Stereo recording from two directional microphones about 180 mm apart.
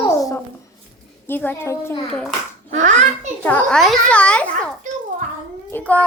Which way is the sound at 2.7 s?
40° right (ahead or behind).